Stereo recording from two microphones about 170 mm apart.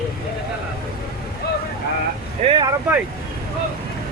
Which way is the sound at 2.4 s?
35° right (ahead or behind).